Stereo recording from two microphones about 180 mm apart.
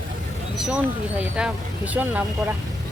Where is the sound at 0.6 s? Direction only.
5° right (ahead or behind).